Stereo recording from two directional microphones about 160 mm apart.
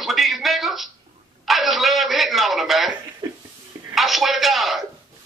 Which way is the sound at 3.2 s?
25° right (ahead or behind).